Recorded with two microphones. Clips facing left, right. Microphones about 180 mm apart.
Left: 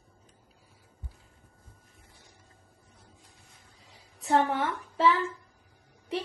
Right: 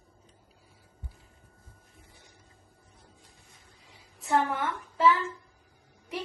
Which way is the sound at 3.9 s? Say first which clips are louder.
Left 2 dB; 35° left (ahead or behind).